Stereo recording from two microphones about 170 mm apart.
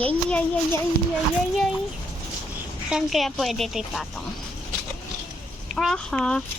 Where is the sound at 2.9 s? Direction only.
Centre (ahead or behind).